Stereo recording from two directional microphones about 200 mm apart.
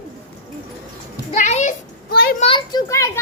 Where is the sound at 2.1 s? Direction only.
50° left (ahead or behind).